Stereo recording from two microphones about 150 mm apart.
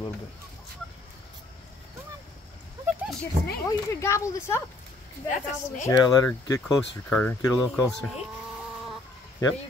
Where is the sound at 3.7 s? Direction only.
20° left (ahead or behind).